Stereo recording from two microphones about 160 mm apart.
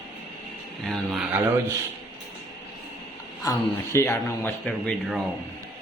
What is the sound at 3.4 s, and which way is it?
A man's voice, 20° left (ahead or behind).